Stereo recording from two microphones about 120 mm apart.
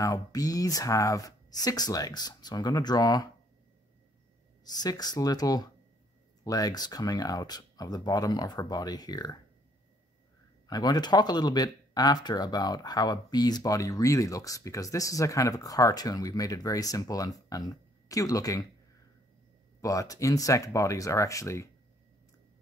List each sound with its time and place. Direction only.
0.0 s speech: 30° left (ahead or behind)
4.6 s speech: 35° left (ahead or behind)
10.7 s speech: 35° left (ahead or behind)
19.8 s speech: 30° left (ahead or behind)